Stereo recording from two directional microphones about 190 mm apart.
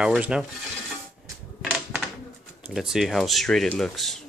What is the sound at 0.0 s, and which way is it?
Speech, 5° right (ahead or behind).